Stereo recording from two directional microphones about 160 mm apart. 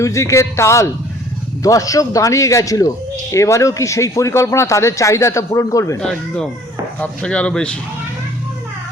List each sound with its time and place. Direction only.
0.0 s speech: 20° left (ahead or behind)
6.0 s speech: 5° left (ahead or behind)